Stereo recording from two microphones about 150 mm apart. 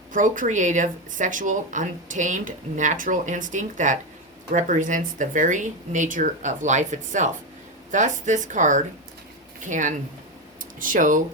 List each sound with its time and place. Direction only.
0.1 s speech: 60° right (ahead or behind)